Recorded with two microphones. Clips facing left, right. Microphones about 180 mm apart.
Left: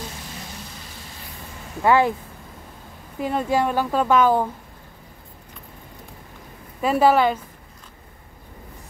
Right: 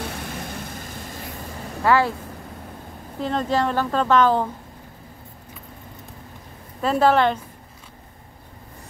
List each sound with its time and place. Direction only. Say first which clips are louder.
0.1 s vehicle: right 6 dB; 55° right (ahead or behind)
1.8 s speech: left 1 dB; 20° left (ahead or behind)
3.2 s speech: left 1 dB; 10° left (ahead or behind)
6.8 s speech: left 1 dB; 10° left (ahead or behind)